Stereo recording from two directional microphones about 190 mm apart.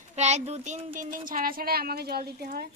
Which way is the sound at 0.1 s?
35° right (ahead or behind).